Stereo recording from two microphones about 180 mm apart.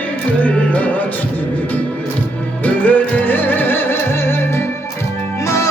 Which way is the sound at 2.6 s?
10° left (ahead or behind).